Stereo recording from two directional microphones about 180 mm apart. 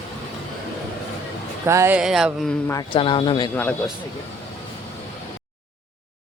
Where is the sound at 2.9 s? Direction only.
30° left (ahead or behind).